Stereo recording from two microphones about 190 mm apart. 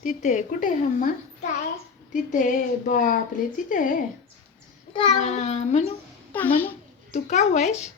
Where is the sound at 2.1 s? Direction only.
45° left (ahead or behind).